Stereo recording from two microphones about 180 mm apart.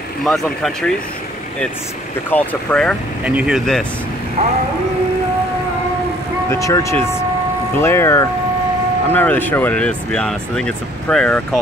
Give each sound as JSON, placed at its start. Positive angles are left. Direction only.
{"t": 0.2, "sound": "speech", "side_deg": 0}
{"t": 2.3, "sound": "speech", "side_deg": 5}
{"t": 3.3, "sound": "speech", "side_deg": -5}
{"t": 4.4, "sound": "a sound", "side_deg": -35}
{"t": 6.5, "sound": "speech", "side_deg": 15}